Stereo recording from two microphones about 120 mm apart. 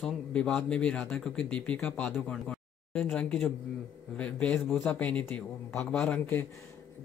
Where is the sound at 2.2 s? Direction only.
10° left (ahead or behind).